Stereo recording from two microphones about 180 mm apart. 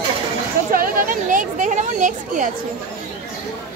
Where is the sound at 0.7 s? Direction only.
50° right (ahead or behind).